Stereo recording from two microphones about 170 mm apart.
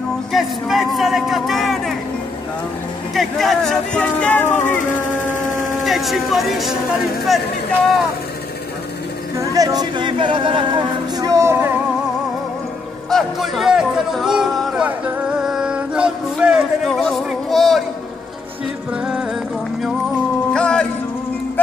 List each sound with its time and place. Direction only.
0.3 s speech: centre (ahead or behind)
3.2 s speech: centre (ahead or behind)
5.1 s music: 50° left (ahead or behind)
5.9 s speech: centre (ahead or behind)
9.4 s speech: 20° right (ahead or behind)
13.1 s speech: centre (ahead or behind)
20.5 s music: 5° left (ahead or behind)